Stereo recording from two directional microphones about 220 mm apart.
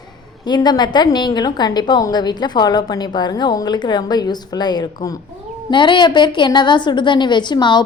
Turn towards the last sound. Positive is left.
turn(degrees=20)  # may be behind; listen again after turning